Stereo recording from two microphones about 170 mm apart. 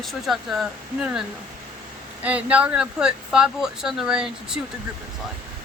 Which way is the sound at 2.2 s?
5° right (ahead or behind).